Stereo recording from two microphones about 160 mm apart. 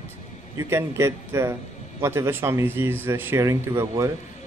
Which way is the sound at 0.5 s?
20° right (ahead or behind).